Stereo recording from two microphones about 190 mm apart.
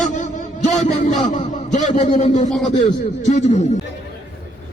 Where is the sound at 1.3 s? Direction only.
40° left (ahead or behind).